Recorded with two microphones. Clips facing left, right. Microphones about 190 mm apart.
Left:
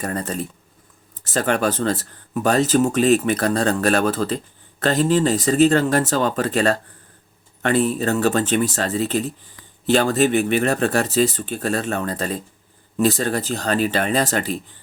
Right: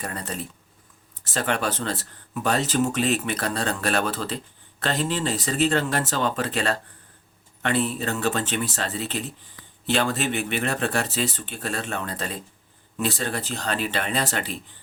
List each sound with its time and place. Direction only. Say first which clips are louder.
0.0 s speech: left 7 dB; 45° left (ahead or behind)